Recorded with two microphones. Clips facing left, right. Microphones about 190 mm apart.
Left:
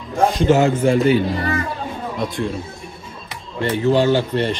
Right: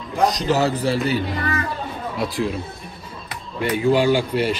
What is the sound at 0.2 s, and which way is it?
A man's voice, 40° right (ahead or behind).